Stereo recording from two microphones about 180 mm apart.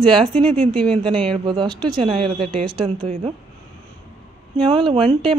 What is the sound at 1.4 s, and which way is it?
Speech, 25° right (ahead or behind).